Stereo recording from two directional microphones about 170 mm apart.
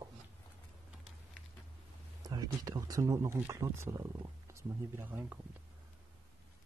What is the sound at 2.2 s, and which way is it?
Speech, 20° right (ahead or behind).